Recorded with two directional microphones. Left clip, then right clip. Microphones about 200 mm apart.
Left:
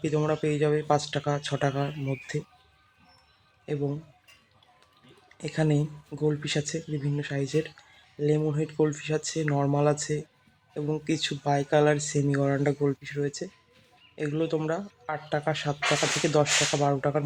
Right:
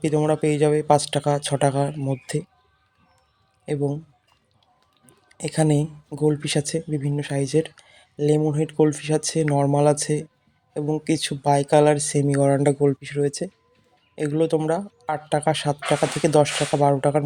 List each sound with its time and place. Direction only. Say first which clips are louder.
0.0 s speech: right 6 dB; 25° right (ahead or behind)
3.7 s speech: right 6 dB; 20° right (ahead or behind)
5.4 s speech: right 6 dB; 25° right (ahead or behind)